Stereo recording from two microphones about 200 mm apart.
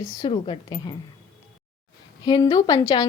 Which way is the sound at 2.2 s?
20° left (ahead or behind).